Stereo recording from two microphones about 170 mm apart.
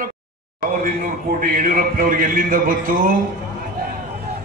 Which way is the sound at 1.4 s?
55° right (ahead or behind).